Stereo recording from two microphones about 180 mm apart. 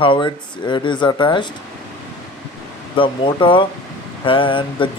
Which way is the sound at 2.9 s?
25° left (ahead or behind).